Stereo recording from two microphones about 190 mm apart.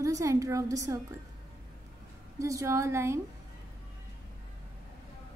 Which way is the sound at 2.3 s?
15° right (ahead or behind).